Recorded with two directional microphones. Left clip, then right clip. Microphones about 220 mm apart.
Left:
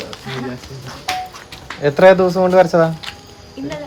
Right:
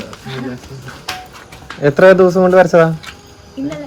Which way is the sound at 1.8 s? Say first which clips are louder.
Right 2 dB; 35° right (ahead or behind).